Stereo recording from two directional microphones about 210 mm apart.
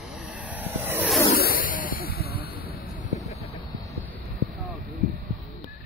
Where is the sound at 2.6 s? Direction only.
40° left (ahead or behind).